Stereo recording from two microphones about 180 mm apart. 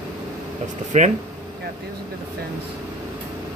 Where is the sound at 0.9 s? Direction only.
40° right (ahead or behind).